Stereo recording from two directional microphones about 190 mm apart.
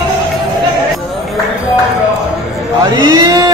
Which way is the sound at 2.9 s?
20° right (ahead or behind).